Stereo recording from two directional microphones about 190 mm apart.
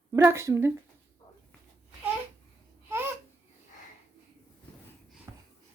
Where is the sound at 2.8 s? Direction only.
10° right (ahead or behind).